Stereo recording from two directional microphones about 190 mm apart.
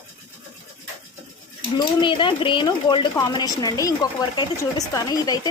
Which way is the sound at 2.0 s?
25° left (ahead or behind).